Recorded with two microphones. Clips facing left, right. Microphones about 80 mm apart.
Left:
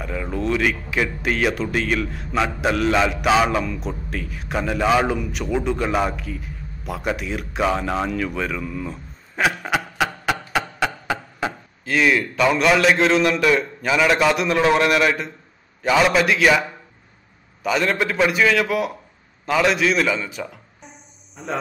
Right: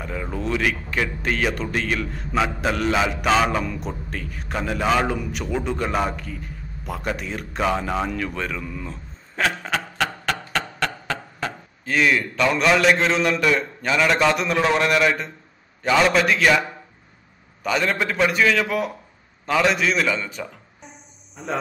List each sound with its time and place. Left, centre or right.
0.0 s a man's voice: centre
11.8 s a man's voice: centre
17.6 s a man's voice: centre